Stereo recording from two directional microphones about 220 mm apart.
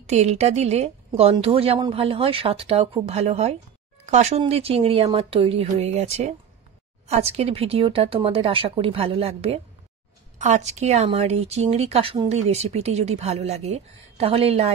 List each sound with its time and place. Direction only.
0.0 s speech: 30° right (ahead or behind)